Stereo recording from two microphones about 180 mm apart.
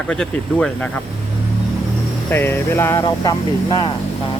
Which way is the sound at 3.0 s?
25° left (ahead or behind).